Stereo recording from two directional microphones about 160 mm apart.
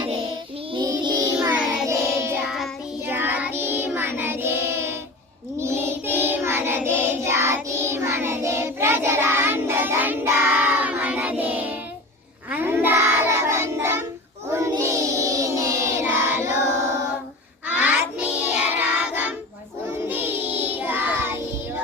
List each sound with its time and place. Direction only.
0.7 s music: 25° right (ahead or behind)
1.4 s child singing: 5° right (ahead or behind)
2.4 s child singing: centre (ahead or behind)
3.1 s child singing: 15° right (ahead or behind)